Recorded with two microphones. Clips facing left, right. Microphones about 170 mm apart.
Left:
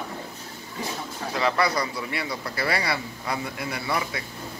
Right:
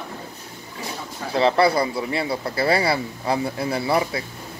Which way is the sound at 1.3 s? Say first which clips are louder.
Right 7 dB; 30° right (ahead or behind).